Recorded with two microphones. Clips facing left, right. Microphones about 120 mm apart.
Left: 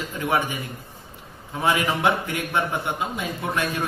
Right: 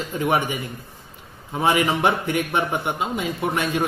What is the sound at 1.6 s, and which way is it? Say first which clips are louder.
Speech: right 2 dB; 25° right (ahead or behind).